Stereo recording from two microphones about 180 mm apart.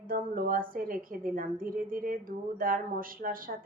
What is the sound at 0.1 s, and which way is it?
A woman's voice, 50° right (ahead or behind).